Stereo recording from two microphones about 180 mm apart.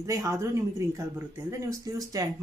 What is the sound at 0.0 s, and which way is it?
A woman's voice, 15° right (ahead or behind).